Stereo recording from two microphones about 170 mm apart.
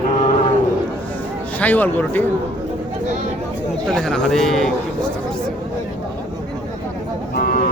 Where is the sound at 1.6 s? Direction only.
10° left (ahead or behind).